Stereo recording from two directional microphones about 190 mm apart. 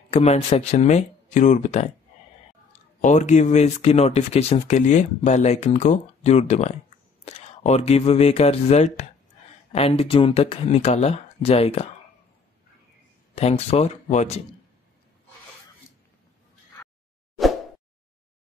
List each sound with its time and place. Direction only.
0.1 s speech: 35° left (ahead or behind)
3.0 s speech: 40° left (ahead or behind)
13.3 s speech: 35° left (ahead or behind)